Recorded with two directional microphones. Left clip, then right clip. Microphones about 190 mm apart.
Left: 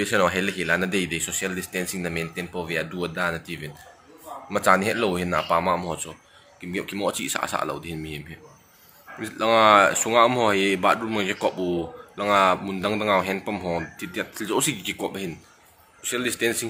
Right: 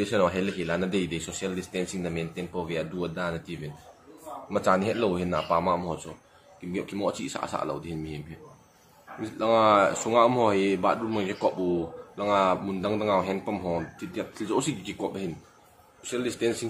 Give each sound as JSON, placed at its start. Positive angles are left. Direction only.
{"t": 0.0, "sound": "speech", "side_deg": 5}
{"t": 9.2, "sound": "speech", "side_deg": 5}